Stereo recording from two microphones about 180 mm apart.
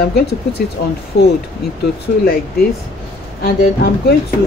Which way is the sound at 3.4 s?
60° left (ahead or behind).